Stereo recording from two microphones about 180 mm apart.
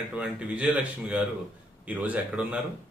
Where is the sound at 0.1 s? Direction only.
5° right (ahead or behind).